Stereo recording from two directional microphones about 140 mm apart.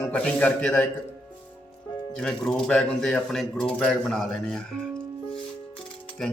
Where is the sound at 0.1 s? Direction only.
10° left (ahead or behind).